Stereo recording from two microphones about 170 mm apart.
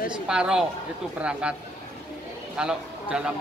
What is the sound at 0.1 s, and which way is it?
Speech, 5° right (ahead or behind).